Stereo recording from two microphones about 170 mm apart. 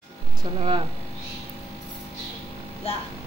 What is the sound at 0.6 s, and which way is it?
Speech, 30° right (ahead or behind).